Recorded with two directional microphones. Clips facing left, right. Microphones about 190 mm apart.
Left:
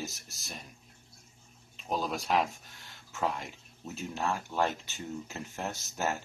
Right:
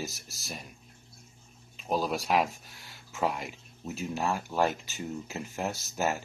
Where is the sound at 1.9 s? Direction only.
5° right (ahead or behind).